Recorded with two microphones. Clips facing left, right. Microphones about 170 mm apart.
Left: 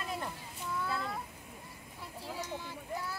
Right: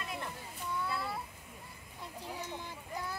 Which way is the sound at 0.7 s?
5° right (ahead or behind).